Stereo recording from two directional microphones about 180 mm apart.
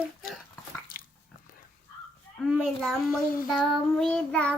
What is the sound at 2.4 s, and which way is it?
Child singing, 5° left (ahead or behind).